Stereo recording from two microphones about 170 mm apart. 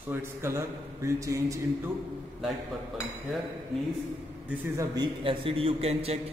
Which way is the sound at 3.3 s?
Centre (ahead or behind).